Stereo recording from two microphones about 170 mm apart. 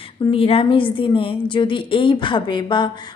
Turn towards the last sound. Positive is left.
turn(degrees=25)  # may be behind; listen again after turning